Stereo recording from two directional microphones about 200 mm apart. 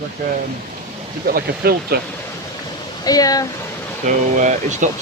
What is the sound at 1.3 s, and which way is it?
Speech, 50° right (ahead or behind).